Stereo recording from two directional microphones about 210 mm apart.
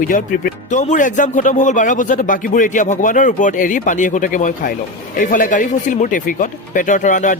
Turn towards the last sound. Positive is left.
turn(degrees=35)  # may be behind; listen again after turning